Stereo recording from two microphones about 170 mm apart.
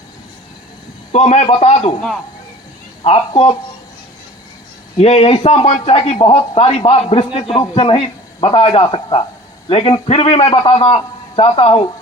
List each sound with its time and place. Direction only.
1.1 s a man's voice: 40° left (ahead or behind)
3.0 s a man's voice: 35° left (ahead or behind)
4.9 s a man's voice: 35° left (ahead or behind)